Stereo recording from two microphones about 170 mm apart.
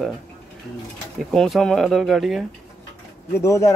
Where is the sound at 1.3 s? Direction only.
Centre (ahead or behind).